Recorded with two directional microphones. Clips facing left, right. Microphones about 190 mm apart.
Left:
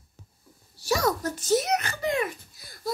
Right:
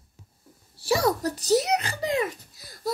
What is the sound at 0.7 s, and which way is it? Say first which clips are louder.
A child's voice: right 2 dB; 30° right (ahead or behind).